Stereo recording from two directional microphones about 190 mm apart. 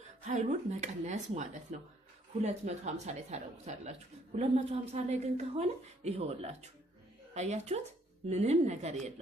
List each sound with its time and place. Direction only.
0.2 s a woman's voice: 35° right (ahead or behind)